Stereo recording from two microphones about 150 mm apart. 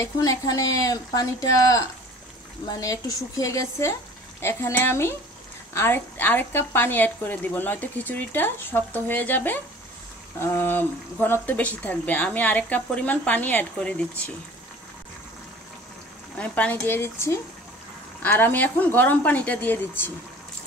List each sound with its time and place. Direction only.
0.0 s a woman's voice: 25° left (ahead or behind); by 14.2 s 5° left (ahead or behind)
16.3 s a woman's voice: 10° left (ahead or behind)